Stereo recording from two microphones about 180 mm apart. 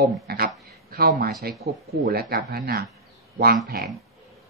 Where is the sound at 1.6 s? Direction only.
35° right (ahead or behind).